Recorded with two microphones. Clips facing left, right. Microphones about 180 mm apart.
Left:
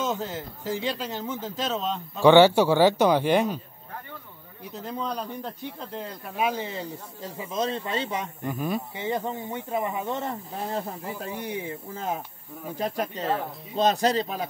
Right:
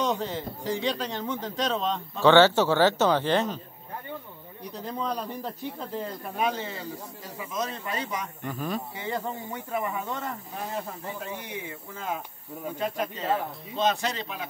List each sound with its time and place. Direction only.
0.0 s speech: centre (ahead or behind)
4.7 s speech: centre (ahead or behind)
6.5 s speech: 15° left (ahead or behind)
7.3 s speech: 30° left (ahead or behind)
8.5 s speech: 10° left (ahead or behind)
10.7 s speech: 35° left (ahead or behind)